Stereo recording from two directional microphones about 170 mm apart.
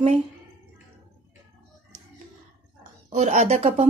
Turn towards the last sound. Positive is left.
turn(degrees=-40)  # may be behind; listen again after turning